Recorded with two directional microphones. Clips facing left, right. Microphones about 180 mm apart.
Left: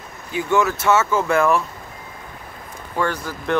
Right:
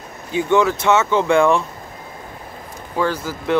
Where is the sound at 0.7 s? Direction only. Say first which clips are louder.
Right 2 dB; 5° left (ahead or behind).